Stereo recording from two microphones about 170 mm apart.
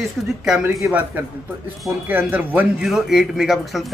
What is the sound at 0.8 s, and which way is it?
A man's voice, 10° right (ahead or behind).